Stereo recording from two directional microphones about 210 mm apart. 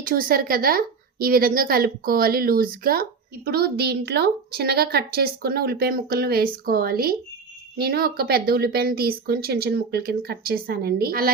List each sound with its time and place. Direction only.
0.0 s a woman's voice: 45° right (ahead or behind)